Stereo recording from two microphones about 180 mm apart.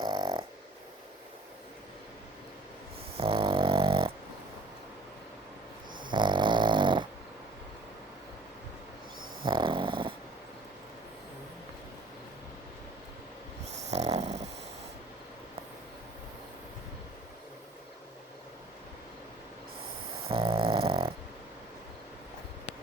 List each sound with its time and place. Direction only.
0.0 s dog: 25° right (ahead or behind)
3.2 s dog: 30° right (ahead or behind)
6.1 s dog: 25° right (ahead or behind)
9.4 s dog: 25° right (ahead or behind)
13.7 s dog: 40° right (ahead or behind)
20.2 s dog: 30° right (ahead or behind)